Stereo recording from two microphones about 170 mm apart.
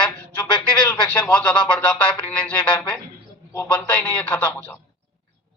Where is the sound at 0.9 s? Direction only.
15° left (ahead or behind).